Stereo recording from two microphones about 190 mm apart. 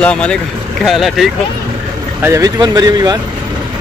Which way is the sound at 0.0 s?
5° left (ahead or behind).